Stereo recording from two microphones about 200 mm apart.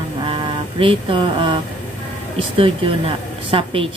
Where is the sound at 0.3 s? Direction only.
25° right (ahead or behind).